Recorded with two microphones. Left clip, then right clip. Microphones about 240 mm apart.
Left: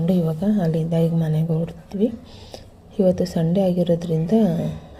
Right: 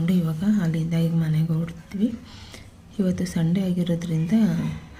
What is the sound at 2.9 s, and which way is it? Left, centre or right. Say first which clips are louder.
A woman's voice: left 9 dB; centre.